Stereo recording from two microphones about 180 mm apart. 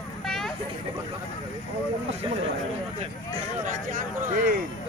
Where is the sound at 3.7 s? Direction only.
45° right (ahead or behind).